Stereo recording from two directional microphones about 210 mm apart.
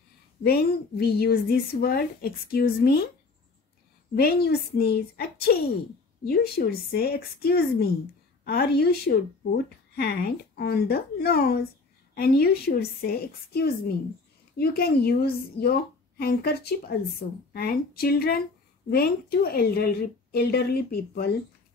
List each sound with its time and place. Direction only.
0.4 s a woman's voice: 45° left (ahead or behind)
4.1 s a woman's voice: 50° left (ahead or behind)